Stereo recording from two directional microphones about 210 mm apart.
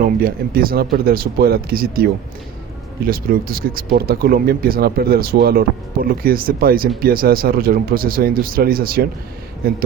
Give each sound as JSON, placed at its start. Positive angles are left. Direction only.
{"t": 0.0, "sound": "speech", "side_deg": -45}
{"t": 3.1, "sound": "speech", "side_deg": -45}